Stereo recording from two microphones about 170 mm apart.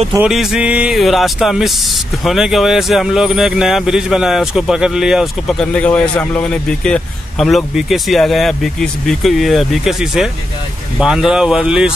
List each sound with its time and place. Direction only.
0.2 s speech: centre (ahead or behind)